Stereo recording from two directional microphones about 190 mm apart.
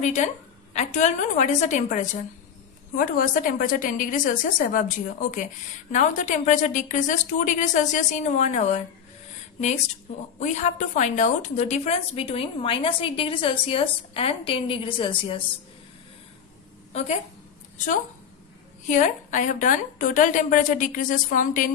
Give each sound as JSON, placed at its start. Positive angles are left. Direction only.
{"t": 0.0, "sound": "a woman's voice", "side_deg": 40}
{"t": 10.4, "sound": "a woman's voice", "side_deg": 40}
{"t": 18.9, "sound": "a woman's voice", "side_deg": 40}